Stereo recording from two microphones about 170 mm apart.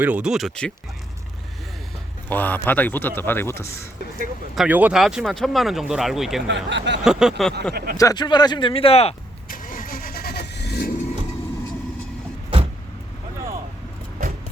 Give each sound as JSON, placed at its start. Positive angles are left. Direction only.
{"t": 0.0, "sound": "speech", "side_deg": -5}
{"t": 2.3, "sound": "speech", "side_deg": 10}
{"t": 4.5, "sound": "speech", "side_deg": -5}
{"t": 6.5, "sound": "speech", "side_deg": -90}
{"t": 7.0, "sound": "speech", "side_deg": -5}
{"t": 7.7, "sound": "speech", "side_deg": -65}
{"t": 7.9, "sound": "speech", "side_deg": 20}
{"t": 9.5, "sound": "vehicle", "side_deg": 55}